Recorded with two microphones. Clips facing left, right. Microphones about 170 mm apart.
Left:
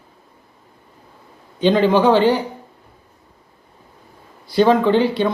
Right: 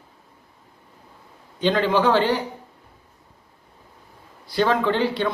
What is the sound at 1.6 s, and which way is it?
Speech, 20° left (ahead or behind).